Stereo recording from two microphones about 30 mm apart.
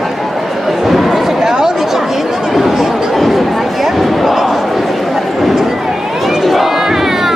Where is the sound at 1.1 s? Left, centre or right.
Centre.